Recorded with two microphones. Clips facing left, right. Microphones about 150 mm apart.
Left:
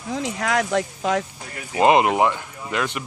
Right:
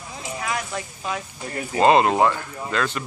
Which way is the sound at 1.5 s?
40° right (ahead or behind).